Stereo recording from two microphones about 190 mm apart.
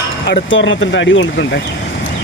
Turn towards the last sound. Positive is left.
turn(degrees=75)  # may be behind; listen again after turning